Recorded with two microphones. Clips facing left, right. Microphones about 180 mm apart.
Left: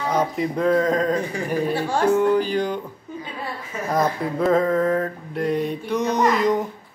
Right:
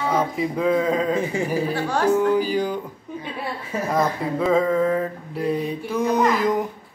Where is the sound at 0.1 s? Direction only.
5° right (ahead or behind).